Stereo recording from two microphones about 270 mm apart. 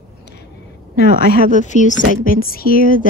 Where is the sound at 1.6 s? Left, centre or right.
Left.